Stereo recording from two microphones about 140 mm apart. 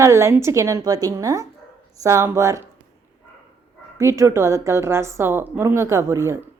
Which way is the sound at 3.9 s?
20° right (ahead or behind).